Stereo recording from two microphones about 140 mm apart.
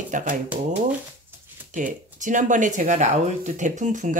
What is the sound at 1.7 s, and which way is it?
Speech, 65° right (ahead or behind).